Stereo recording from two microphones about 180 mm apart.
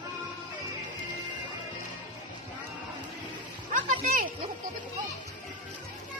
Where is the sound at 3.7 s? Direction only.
45° right (ahead or behind).